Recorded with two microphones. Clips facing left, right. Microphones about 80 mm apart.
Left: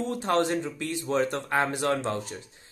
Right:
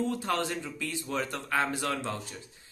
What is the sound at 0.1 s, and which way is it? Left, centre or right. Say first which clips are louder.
Speech: left 6 dB; left.